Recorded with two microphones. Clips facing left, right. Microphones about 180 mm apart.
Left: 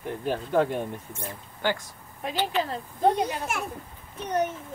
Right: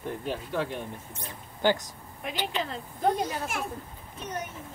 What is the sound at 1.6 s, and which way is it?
A woman's voice, 20° right (ahead or behind).